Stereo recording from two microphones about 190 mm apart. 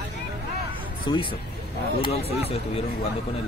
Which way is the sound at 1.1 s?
25° left (ahead or behind).